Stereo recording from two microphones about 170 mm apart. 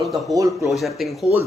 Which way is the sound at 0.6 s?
Centre (ahead or behind).